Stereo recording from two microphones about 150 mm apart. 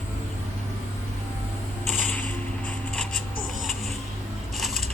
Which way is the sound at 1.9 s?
10° left (ahead or behind).